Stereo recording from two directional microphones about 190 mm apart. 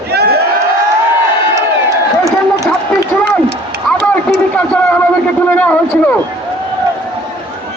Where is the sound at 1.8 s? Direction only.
15° right (ahead or behind).